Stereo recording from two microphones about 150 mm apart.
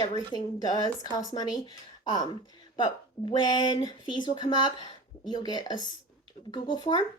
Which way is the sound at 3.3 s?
30° left (ahead or behind).